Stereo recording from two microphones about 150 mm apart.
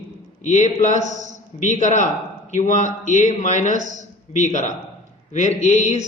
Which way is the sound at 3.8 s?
60° right (ahead or behind).